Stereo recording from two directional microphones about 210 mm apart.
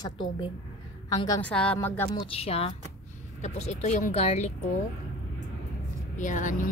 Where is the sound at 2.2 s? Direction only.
30° left (ahead or behind).